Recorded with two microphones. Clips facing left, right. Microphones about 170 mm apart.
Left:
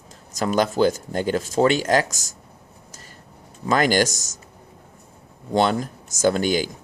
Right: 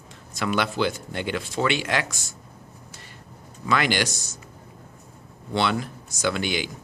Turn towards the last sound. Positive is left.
turn(degrees=40)  # may be behind; listen again after turning